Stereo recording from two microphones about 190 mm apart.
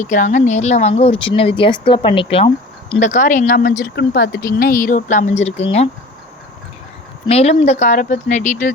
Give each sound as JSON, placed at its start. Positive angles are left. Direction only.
{"t": 0.0, "sound": "speech", "side_deg": 40}
{"t": 3.0, "sound": "speech", "side_deg": 40}
{"t": 3.9, "sound": "speech", "side_deg": 60}
{"t": 7.3, "sound": "speech", "side_deg": 35}